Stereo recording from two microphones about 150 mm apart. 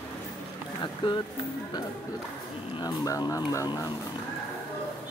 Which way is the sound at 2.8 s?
25° left (ahead or behind).